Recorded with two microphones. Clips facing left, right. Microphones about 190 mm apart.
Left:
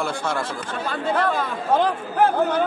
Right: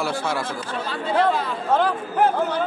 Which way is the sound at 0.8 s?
50° left (ahead or behind).